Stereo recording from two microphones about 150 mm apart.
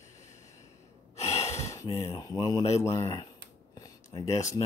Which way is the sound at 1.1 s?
45° left (ahead or behind).